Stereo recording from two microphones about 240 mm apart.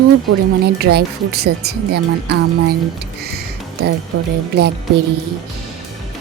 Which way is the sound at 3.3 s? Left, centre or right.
Right.